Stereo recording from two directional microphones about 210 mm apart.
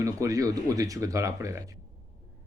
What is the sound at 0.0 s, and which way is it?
Speech, 15° right (ahead or behind).